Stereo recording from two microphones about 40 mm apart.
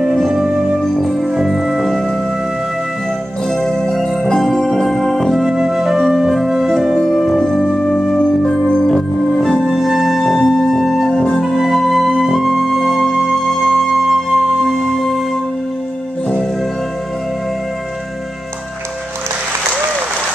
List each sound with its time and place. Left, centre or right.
0.3 s music: centre
0.9 s music: centre
1.4 s music: centre
3.4 s music: centre
5.3 s music: centre
9.4 s music: centre